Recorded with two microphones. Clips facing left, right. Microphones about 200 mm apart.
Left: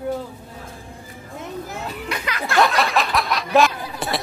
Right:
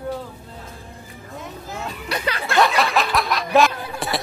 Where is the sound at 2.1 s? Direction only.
35° right (ahead or behind).